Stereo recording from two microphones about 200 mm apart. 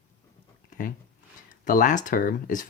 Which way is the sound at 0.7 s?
45° left (ahead or behind).